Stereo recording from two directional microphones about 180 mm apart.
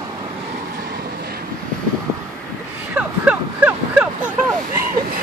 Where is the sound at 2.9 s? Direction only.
5° right (ahead or behind).